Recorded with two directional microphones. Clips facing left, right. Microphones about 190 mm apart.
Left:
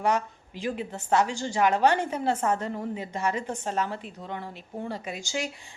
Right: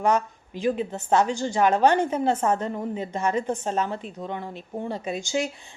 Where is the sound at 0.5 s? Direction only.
20° right (ahead or behind).